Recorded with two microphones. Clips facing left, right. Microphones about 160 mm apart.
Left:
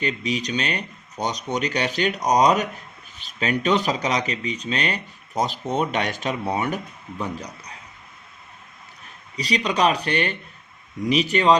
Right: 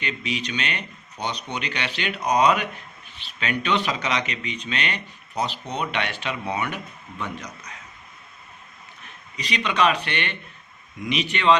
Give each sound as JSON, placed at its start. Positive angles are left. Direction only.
{"t": 0.0, "sound": "speech", "side_deg": 35}
{"t": 9.3, "sound": "speech", "side_deg": 35}